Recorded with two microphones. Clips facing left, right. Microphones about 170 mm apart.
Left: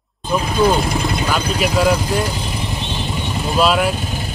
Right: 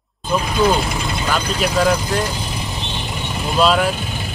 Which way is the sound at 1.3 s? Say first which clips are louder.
Right 1 dB; 5° left (ahead or behind).